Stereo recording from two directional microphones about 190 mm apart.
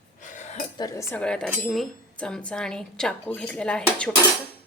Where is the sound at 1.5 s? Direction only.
Centre (ahead or behind).